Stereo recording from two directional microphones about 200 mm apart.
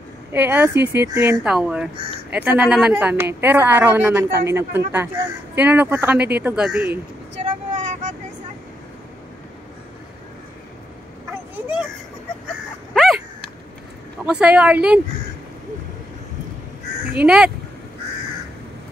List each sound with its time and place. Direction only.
0.3 s a woman's voice: 10° right (ahead or behind)
7.7 s vehicle: 40° right (ahead or behind)
12.9 s dog: centre (ahead or behind)
14.2 s speech: 5° right (ahead or behind)
17.2 s speech: 5° right (ahead or behind)